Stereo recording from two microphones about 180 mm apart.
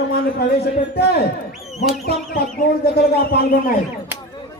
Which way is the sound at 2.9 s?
60° left (ahead or behind).